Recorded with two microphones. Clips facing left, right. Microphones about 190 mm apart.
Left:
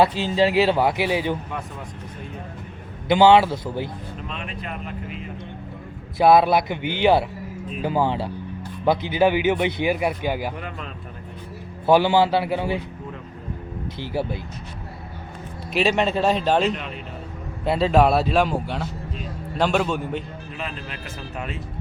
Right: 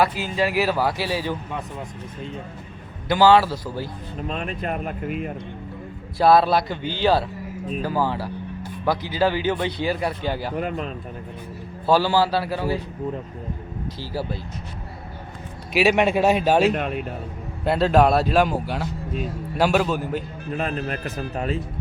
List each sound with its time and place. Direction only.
0.0 s speech: 25° left (ahead or behind)
3.1 s speech: 20° left (ahead or behind)
4.3 s a man's voice: 45° right (ahead or behind)
6.1 s speech: 20° left (ahead or behind)
11.9 s speech: 20° left (ahead or behind)
14.0 s speech: 20° left (ahead or behind)
15.7 s a man's voice: 10° right (ahead or behind)
20.5 s a man's voice: 45° right (ahead or behind)